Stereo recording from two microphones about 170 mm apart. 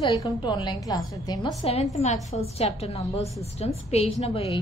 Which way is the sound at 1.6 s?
35° left (ahead or behind).